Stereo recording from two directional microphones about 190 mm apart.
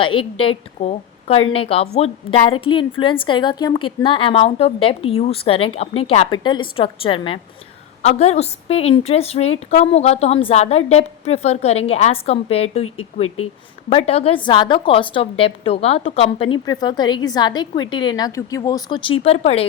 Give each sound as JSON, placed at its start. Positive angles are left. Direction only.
{"t": 0.0, "sound": "a woman's voice", "side_deg": 25}
{"t": 13.9, "sound": "a woman's voice", "side_deg": 35}